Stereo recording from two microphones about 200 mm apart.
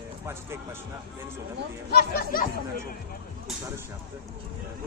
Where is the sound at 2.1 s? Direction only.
45° left (ahead or behind).